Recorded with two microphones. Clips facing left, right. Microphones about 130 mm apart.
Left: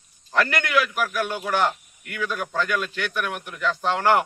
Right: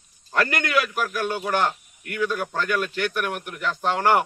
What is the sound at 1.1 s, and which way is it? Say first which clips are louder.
Speech: right 1 dB; 10° right (ahead or behind).